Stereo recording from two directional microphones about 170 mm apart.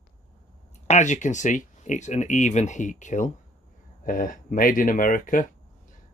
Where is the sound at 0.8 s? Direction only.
45° left (ahead or behind).